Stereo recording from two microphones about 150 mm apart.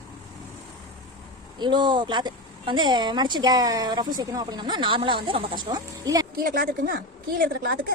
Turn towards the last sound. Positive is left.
turn(degrees=-85)